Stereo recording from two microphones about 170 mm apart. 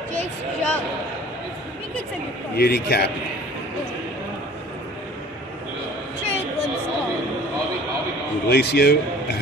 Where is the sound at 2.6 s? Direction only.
65° left (ahead or behind).